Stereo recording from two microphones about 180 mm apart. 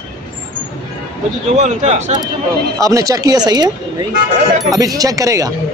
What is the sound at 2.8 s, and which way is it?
Speech, 20° right (ahead or behind).